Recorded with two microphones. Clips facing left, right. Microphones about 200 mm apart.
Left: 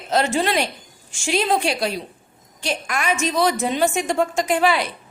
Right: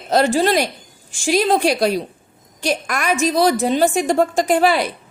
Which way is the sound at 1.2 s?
40° right (ahead or behind).